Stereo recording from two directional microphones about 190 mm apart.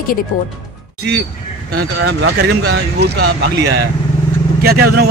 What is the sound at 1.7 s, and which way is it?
Speech, 60° right (ahead or behind).